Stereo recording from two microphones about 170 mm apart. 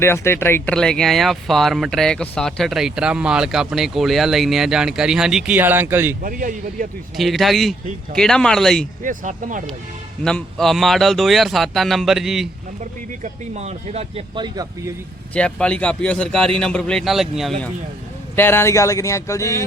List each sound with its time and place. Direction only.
0.0 s speech: 15° left (ahead or behind); by 6.1 s 10° right (ahead or behind)
6.2 s speech: 55° right (ahead or behind)
7.2 s speech: centre (ahead or behind)
9.0 s speech: 50° right (ahead or behind)
10.2 s speech: 5° left (ahead or behind)
13.2 s speech: 40° right (ahead or behind); by 14.9 s 25° right (ahead or behind)
15.3 s speech: 5° left (ahead or behind)
18.3 s speech: 15° left (ahead or behind)